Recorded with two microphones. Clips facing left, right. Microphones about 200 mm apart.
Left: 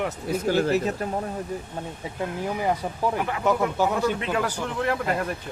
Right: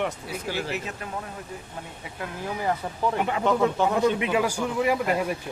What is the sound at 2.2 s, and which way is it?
Speech, 15° left (ahead or behind).